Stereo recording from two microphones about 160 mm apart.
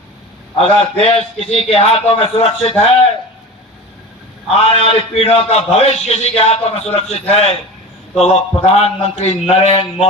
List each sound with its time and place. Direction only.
0.6 s a man's voice: 40° left (ahead or behind)
4.4 s a man's voice: 40° left (ahead or behind)